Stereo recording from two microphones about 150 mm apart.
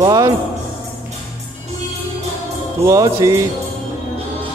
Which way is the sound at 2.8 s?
20° right (ahead or behind).